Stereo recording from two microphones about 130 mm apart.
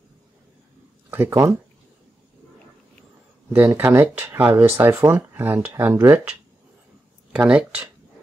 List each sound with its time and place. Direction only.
1.1 s speech: 20° right (ahead or behind)
3.5 s speech: 15° right (ahead or behind)
7.3 s speech: 10° right (ahead or behind)